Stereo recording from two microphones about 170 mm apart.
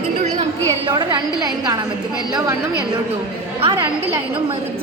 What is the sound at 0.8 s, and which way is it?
Speech, 25° right (ahead or behind).